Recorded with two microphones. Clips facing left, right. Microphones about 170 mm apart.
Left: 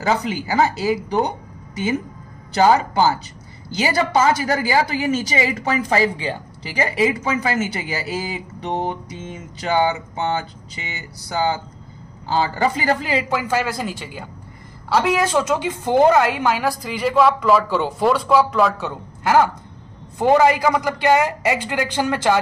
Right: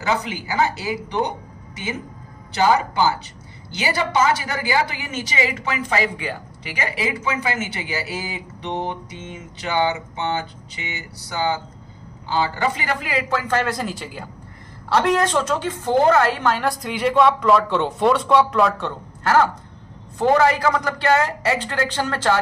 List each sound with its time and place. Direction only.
0.0 s a woman's voice: 35° left (ahead or behind)
2.5 s a woman's voice: 35° left (ahead or behind)
13.3 s a woman's voice: 10° left (ahead or behind)